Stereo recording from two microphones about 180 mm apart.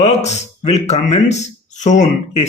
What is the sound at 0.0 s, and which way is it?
A man's voice, 40° left (ahead or behind).